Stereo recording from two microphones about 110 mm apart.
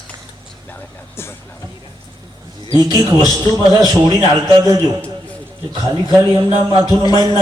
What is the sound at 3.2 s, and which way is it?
Speech, 40° right (ahead or behind).